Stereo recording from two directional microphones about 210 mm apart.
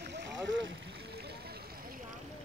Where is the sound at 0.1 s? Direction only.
60° right (ahead or behind).